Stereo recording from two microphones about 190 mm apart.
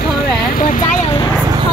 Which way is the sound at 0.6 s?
45° left (ahead or behind).